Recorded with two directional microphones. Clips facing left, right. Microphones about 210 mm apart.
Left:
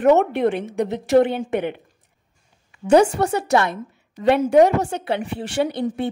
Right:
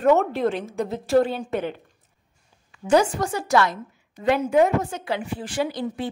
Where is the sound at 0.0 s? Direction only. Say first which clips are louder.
Left 3 dB; 20° left (ahead or behind).